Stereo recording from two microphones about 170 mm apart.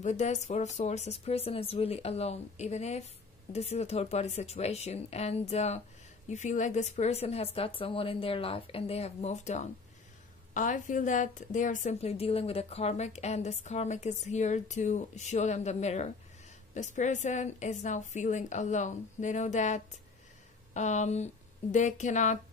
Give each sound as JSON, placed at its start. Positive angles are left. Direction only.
{"t": 0.0, "sound": "a woman's voice", "side_deg": 45}